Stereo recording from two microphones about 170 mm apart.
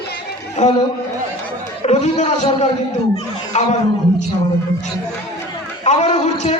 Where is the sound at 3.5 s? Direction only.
45° left (ahead or behind).